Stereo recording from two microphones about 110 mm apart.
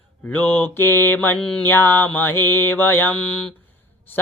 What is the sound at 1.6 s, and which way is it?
Mantra, 20° left (ahead or behind).